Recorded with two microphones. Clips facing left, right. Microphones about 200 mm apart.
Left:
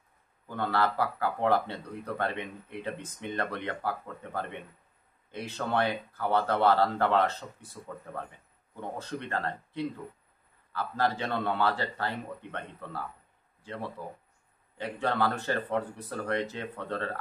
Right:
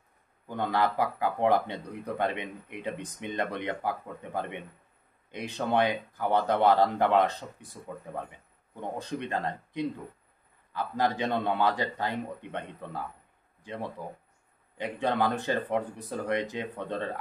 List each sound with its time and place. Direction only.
0.5 s speech: 15° right (ahead or behind)